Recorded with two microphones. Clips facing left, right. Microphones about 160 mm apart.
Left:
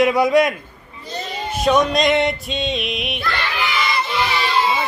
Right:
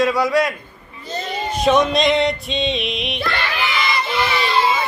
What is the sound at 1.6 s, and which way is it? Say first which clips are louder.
Dog: even; centre (ahead or behind).